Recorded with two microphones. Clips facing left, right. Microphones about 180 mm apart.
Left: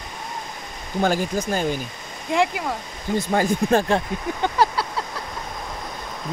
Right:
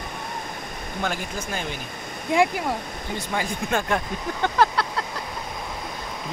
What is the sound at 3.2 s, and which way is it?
Speech, 45° left (ahead or behind).